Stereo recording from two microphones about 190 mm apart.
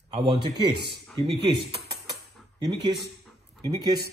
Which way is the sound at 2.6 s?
25° right (ahead or behind).